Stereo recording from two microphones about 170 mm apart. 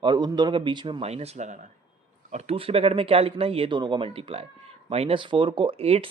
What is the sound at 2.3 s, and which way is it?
Speech, 35° right (ahead or behind).